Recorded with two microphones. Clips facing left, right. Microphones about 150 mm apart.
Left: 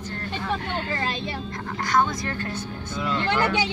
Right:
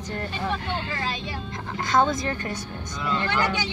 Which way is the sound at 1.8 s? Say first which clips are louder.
Right 2 dB; 15° right (ahead or behind).